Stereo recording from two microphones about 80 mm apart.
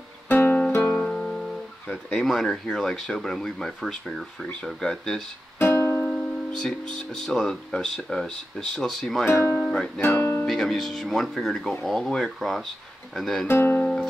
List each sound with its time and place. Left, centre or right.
0.3 s guitar: left
1.0 s music: centre
2.0 s speech: centre
5.6 s music: left
6.0 s speech: centre
9.3 s speech: left
9.6 s music: centre
10.0 s music: left
10.4 s speech: centre
13.5 s speech: left